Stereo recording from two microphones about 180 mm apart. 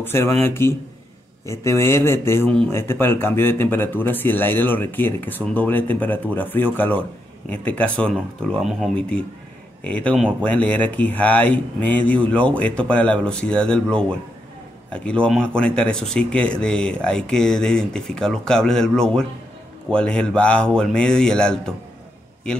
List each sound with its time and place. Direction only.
0.0 s speech: 10° left (ahead or behind)